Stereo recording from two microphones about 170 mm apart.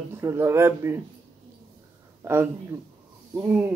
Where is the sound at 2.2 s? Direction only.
15° right (ahead or behind).